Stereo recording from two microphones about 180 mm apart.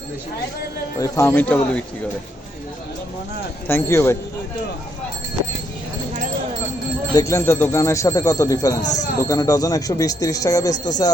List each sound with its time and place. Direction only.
0.9 s speech: 15° left (ahead or behind)
3.7 s speech: 15° left (ahead or behind)
7.2 s speech: 15° left (ahead or behind)